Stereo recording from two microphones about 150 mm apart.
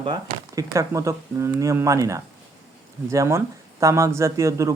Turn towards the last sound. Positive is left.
turn(degrees=-20)  # may be behind; listen again after turning